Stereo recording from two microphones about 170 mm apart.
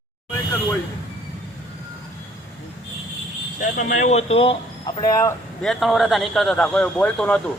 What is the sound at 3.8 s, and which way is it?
Speech, 45° left (ahead or behind).